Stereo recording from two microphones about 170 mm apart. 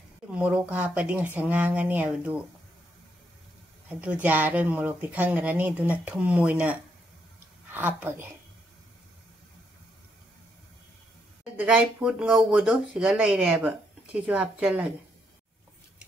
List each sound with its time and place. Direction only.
0.3 s speech: 5° right (ahead or behind)
4.0 s a woman's voice: 10° right (ahead or behind)
11.5 s speech: 5° right (ahead or behind)